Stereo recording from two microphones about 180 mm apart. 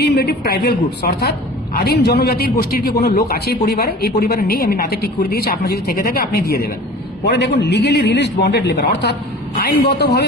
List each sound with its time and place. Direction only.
0.0 s a man's voice: 65° left (ahead or behind)